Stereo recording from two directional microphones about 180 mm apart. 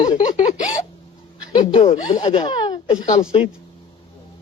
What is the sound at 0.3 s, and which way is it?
Speech, 40° left (ahead or behind).